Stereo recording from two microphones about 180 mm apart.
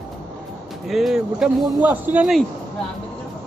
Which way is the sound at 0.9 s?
Centre (ahead or behind).